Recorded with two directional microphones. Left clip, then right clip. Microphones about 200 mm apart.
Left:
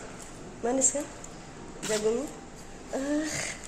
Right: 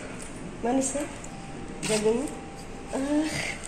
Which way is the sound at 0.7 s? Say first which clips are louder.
Right 1 dB; 20° left (ahead or behind).